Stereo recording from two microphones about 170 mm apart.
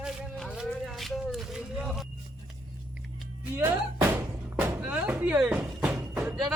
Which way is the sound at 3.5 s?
15° right (ahead or behind).